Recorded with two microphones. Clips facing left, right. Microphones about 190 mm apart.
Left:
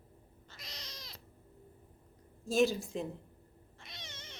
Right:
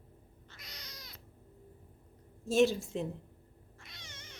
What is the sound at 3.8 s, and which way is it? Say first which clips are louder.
Cat: left 3 dB; 20° left (ahead or behind).